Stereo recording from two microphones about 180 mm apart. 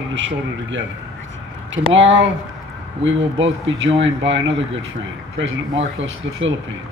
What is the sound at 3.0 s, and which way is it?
Speech, 90° right.